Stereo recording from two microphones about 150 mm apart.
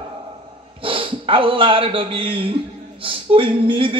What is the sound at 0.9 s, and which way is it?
A man's voice, 35° right (ahead or behind).